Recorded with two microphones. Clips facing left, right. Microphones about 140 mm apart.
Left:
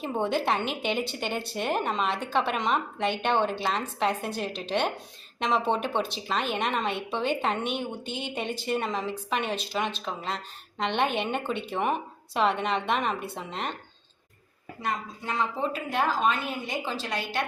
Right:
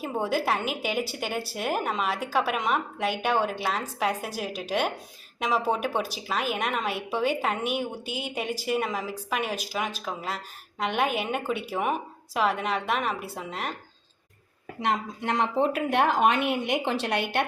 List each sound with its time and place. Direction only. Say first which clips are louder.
0.0 s a woman's voice: even; 5° right (ahead or behind)
14.8 s a woman's voice: right 4 dB; 75° right (ahead or behind)